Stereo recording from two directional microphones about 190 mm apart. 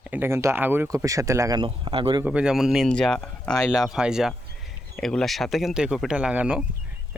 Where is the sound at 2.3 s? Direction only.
5° right (ahead or behind).